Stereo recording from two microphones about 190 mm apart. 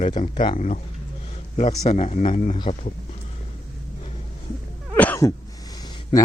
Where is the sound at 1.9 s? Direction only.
35° left (ahead or behind).